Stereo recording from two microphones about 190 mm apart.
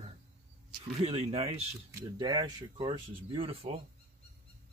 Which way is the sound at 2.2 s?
20° right (ahead or behind).